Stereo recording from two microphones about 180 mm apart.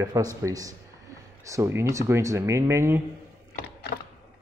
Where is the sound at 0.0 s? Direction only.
20° right (ahead or behind).